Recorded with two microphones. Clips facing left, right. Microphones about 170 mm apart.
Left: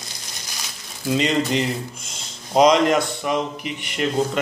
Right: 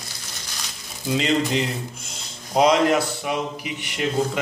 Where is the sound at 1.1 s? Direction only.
Centre (ahead or behind).